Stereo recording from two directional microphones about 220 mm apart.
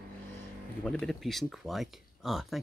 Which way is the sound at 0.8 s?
5° left (ahead or behind).